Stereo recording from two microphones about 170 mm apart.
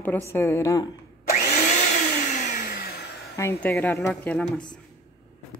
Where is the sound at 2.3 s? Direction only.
50° left (ahead or behind); by 3.1 s 65° left (ahead or behind).